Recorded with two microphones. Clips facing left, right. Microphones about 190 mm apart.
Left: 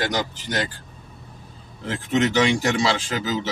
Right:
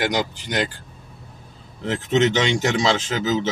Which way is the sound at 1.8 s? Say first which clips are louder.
Right 3 dB; 25° right (ahead or behind).